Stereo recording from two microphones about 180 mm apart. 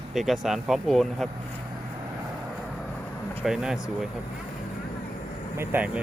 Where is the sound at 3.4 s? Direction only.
5° right (ahead or behind).